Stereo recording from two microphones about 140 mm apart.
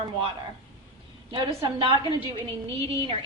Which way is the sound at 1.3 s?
30° right (ahead or behind).